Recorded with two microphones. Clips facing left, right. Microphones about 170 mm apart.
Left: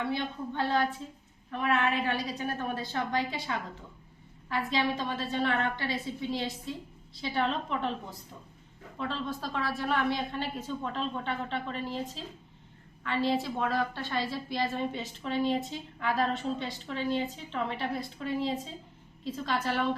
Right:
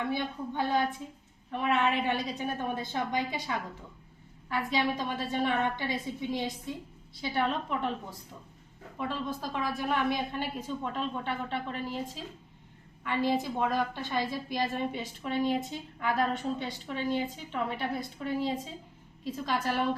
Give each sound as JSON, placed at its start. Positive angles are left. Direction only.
{"t": 0.0, "sound": "a woman's voice", "side_deg": -15}
{"t": 9.0, "sound": "a woman's voice", "side_deg": -10}